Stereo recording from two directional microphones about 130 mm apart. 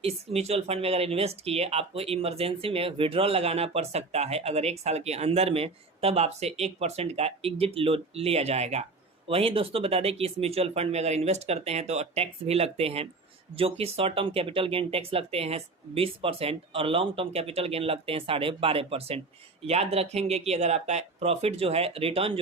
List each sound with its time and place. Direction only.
0.0 s speech: 55° right (ahead or behind)